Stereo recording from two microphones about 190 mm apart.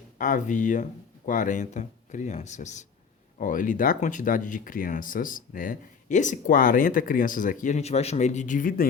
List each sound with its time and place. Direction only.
0.2 s speech: 45° left (ahead or behind)